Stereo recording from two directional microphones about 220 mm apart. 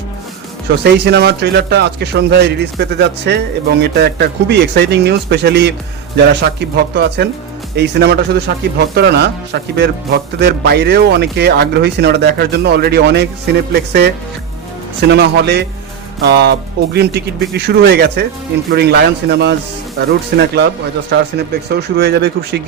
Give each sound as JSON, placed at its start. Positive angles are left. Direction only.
{"t": 0.9, "sound": "speech", "side_deg": -50}